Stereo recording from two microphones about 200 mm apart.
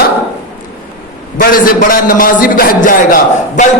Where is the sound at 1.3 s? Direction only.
45° left (ahead or behind).